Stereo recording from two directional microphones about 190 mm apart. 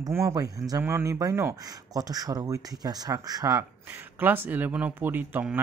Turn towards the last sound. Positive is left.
turn(degrees=-10)  # may be behind; listen again after turning